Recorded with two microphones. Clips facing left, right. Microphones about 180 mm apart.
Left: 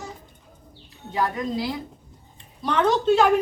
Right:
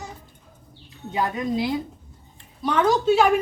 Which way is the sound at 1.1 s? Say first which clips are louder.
Right 1 dB; 20° right (ahead or behind).